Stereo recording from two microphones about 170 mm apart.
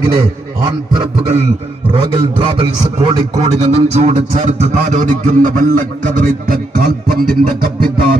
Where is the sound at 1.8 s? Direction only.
30° right (ahead or behind); by 5.7 s 50° right (ahead or behind).